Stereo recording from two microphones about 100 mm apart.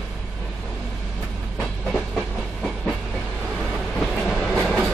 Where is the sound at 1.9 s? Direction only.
Centre (ahead or behind).